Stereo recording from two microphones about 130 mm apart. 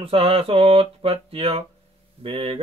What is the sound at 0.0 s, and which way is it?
Mantra, 45° right (ahead or behind).